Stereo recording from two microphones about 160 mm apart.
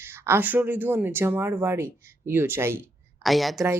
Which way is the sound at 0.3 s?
10° right (ahead or behind).